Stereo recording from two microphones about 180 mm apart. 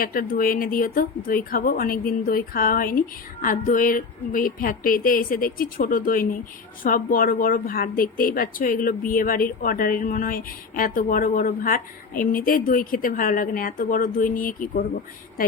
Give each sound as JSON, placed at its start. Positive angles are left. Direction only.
{"t": 0.0, "sound": "speech", "side_deg": 50}